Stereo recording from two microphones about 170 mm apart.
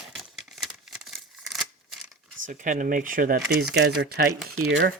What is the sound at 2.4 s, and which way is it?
Speech, 50° right (ahead or behind).